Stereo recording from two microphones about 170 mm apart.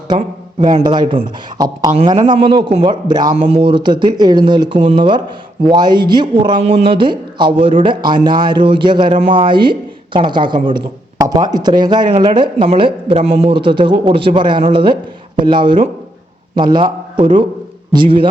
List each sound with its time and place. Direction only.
0.1 s a man's voice: 30° right (ahead or behind)